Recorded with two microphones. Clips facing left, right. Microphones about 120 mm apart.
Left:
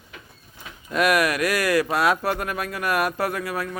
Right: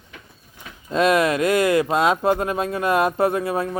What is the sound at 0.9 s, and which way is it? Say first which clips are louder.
Speech: right 3 dB; 25° right (ahead or behind).